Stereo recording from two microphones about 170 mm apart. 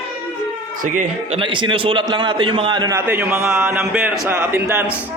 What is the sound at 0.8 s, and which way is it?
Speech, 50° right (ahead or behind).